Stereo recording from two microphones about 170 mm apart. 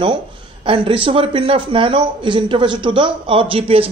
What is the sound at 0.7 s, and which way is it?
A man's voice, 30° right (ahead or behind).